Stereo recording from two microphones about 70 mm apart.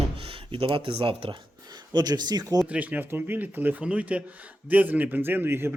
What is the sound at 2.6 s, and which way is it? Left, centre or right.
A man's voice, right.